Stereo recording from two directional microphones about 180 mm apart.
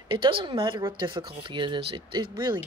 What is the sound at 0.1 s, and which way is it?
Speech, 30° right (ahead or behind).